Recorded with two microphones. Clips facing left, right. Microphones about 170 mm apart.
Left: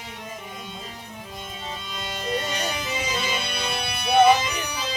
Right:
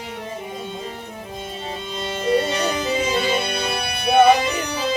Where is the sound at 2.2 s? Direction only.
60° right (ahead or behind).